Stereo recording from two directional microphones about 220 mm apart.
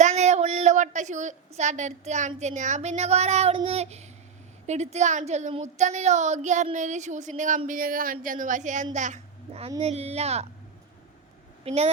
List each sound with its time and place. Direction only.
0.0 s a woman's voice: 30° right (ahead or behind)
11.6 s speech: 30° right (ahead or behind)